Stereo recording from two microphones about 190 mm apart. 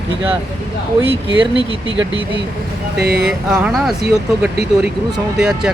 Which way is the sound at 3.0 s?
55° right (ahead or behind).